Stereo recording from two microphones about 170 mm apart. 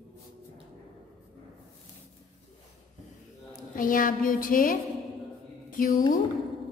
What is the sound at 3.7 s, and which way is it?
A woman's voice, 55° left (ahead or behind).